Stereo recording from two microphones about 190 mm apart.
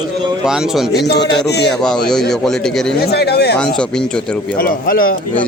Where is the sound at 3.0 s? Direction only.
60° left (ahead or behind).